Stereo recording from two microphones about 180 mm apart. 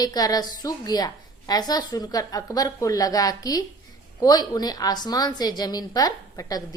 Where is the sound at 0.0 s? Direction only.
20° left (ahead or behind).